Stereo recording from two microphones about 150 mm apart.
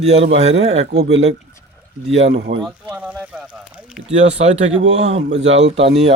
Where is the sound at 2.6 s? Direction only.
10° right (ahead or behind).